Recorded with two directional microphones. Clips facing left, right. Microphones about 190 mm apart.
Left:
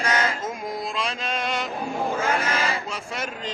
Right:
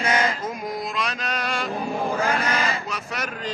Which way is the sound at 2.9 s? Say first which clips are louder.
Right 1 dB; 25° left (ahead or behind).